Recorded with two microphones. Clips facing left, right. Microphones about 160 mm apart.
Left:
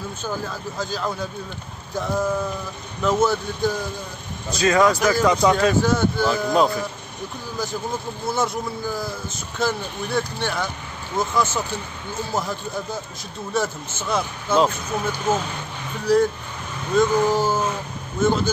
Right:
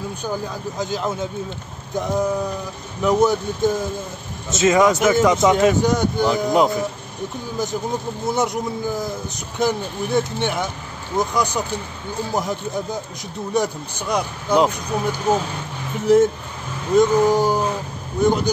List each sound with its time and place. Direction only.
0.2 s speech: 20° right (ahead or behind)